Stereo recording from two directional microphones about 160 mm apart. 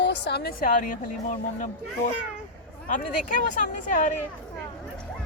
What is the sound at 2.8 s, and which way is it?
Speech, 55° left (ahead or behind).